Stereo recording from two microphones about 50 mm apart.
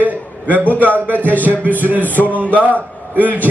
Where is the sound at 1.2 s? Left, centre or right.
Left.